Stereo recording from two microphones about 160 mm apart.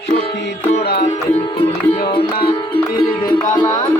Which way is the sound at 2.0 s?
30° left (ahead or behind).